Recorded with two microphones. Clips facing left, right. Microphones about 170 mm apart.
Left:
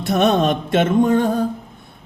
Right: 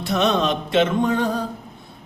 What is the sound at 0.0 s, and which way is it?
A man's voice, 50° left (ahead or behind).